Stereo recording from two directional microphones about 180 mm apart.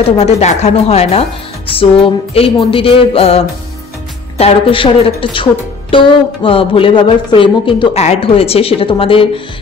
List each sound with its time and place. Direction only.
0.2 s speech: 40° left (ahead or behind)